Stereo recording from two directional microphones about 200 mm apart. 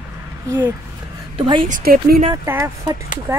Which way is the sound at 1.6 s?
45° right (ahead or behind).